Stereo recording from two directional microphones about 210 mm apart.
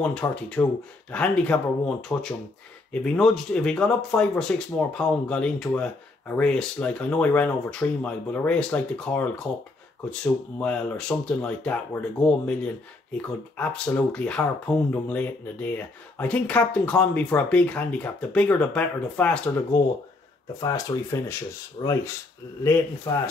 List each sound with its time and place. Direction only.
0.2 s speech: 15° left (ahead or behind)
13.6 s speech: 5° left (ahead or behind); by 21.9 s 25° left (ahead or behind)
22.6 s speech: 10° left (ahead or behind)